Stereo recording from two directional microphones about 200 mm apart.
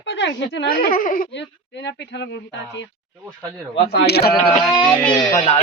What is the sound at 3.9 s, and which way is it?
Speech, 55° left (ahead or behind).